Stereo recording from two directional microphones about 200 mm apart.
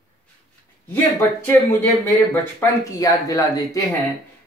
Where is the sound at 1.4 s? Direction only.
10° left (ahead or behind).